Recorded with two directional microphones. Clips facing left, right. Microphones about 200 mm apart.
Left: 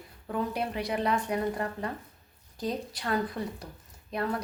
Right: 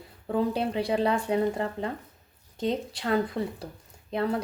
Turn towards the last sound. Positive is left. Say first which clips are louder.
# right 4 dB
turn(degrees=-25)  # may be behind; listen again after turning